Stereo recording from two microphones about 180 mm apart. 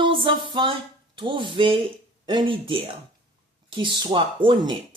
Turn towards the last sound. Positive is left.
turn(degrees=-25)  # may be behind; listen again after turning